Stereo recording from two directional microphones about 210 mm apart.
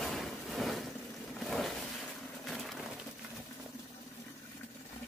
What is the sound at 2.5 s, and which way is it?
Pigeon, centre (ahead or behind).